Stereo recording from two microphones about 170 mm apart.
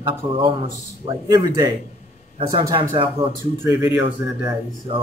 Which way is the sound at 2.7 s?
30° right (ahead or behind).